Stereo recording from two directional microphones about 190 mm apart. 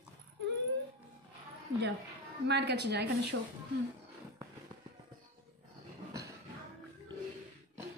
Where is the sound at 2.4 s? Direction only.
65° right (ahead or behind).